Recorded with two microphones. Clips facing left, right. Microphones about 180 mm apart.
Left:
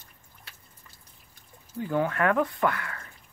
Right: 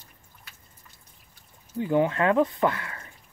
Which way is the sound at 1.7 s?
20° right (ahead or behind).